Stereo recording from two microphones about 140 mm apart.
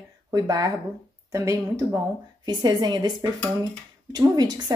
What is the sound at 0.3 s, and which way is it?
A woman's voice, 25° right (ahead or behind).